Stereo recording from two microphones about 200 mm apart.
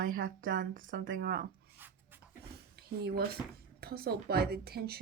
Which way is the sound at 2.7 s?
50° right (ahead or behind).